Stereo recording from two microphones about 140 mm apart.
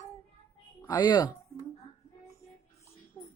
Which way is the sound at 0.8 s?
30° left (ahead or behind).